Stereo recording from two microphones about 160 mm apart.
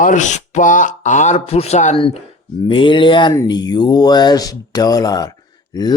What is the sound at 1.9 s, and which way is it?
Speech, 35° left (ahead or behind).